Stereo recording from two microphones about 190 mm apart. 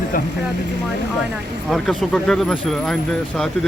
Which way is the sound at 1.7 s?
Centre (ahead or behind).